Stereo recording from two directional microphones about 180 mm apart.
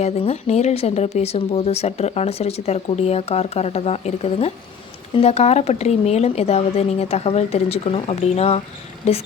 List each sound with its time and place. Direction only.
0.0 s speech: 35° left (ahead or behind)